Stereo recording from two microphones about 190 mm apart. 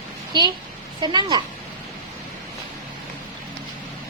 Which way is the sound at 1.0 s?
25° right (ahead or behind).